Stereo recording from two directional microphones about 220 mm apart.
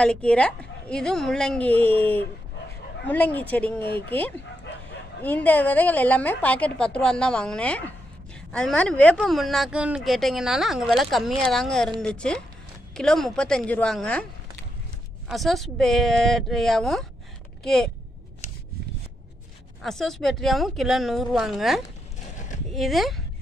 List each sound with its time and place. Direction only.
0.0 s a woman's voice: 5° left (ahead or behind)
5.2 s a woman's voice: 5° left (ahead or behind)
15.2 s a woman's voice: centre (ahead or behind)
19.8 s a woman's voice: centre (ahead or behind)